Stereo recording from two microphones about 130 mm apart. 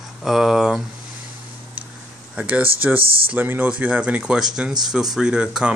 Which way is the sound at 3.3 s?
15° right (ahead or behind).